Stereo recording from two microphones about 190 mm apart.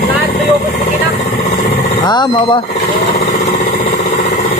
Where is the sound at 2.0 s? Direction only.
20° left (ahead or behind).